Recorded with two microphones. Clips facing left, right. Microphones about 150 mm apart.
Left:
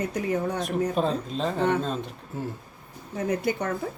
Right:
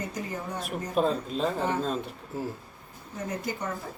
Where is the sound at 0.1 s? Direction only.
70° left (ahead or behind).